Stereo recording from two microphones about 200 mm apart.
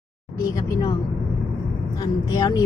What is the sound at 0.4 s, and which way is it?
Speech, 20° left (ahead or behind).